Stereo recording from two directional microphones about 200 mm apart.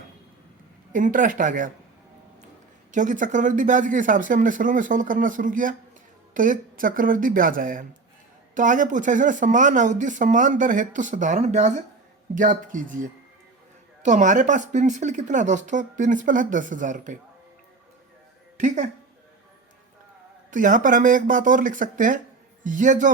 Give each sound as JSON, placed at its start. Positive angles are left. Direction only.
{"t": 0.9, "sound": "speech", "side_deg": -40}
{"t": 2.9, "sound": "speech", "side_deg": -40}
{"t": 18.6, "sound": "speech", "side_deg": -40}
{"t": 20.5, "sound": "speech", "side_deg": -40}